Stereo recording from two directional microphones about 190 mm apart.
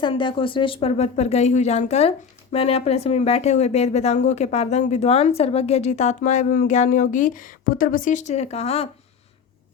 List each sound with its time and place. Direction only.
0.0 s speech: 25° left (ahead or behind)